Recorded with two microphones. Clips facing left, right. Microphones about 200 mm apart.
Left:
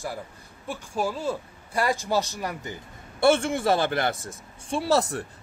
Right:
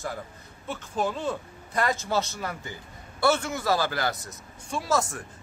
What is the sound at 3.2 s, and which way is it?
A man's voice, 30° left (ahead or behind).